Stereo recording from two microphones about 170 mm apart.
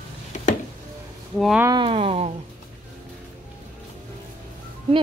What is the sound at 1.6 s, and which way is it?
Speech, 20° right (ahead or behind).